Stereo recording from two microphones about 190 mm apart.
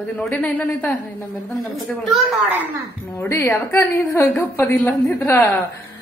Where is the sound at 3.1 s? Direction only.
15° left (ahead or behind).